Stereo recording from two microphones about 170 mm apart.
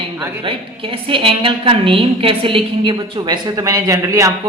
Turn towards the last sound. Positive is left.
turn(degrees=-20)  # may be behind; listen again after turning